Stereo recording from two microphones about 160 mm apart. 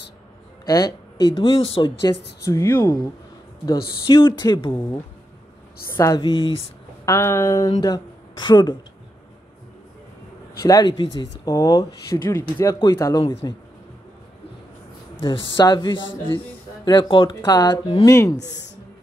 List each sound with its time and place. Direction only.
0.7 s speech: 20° left (ahead or behind)
2.4 s speech: 15° left (ahead or behind)
4.0 s speech: 30° left (ahead or behind)
5.9 s speech: 20° left (ahead or behind)
7.1 s speech: 15° left (ahead or behind)
10.6 s speech: 25° left (ahead or behind)
15.2 s speech: 30° left (ahead or behind)
18.0 s speech: 20° left (ahead or behind)